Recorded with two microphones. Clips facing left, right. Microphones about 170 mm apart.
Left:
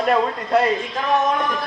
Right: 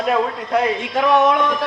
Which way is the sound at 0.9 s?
80° right.